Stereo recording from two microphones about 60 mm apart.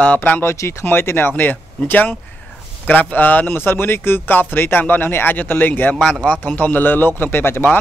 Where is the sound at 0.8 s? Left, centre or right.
Left.